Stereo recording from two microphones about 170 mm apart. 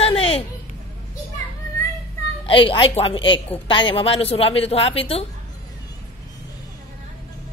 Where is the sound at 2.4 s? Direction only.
30° left (ahead or behind).